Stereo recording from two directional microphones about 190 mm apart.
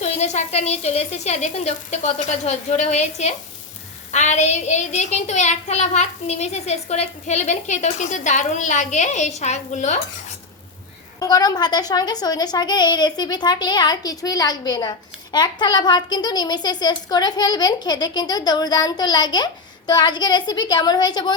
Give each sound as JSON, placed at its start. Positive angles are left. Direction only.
{"t": 0.0, "sound": "a child's voice", "side_deg": 35}
{"t": 11.2, "sound": "a child's voice", "side_deg": 20}